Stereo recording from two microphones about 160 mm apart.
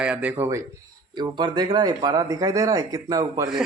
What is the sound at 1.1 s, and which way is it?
Speech, 25° right (ahead or behind).